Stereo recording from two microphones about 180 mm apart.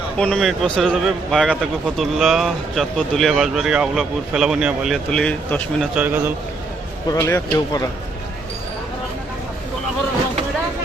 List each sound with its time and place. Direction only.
0.2 s speech: 5° left (ahead or behind)
5.9 s a man's voice: 10° right (ahead or behind)
7.1 s speech: 15° left (ahead or behind)